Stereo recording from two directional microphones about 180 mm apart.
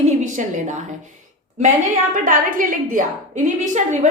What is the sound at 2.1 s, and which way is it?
A woman's voice, 50° right (ahead or behind).